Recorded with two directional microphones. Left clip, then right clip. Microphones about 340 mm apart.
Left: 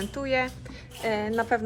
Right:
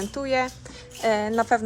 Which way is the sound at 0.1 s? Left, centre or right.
Centre.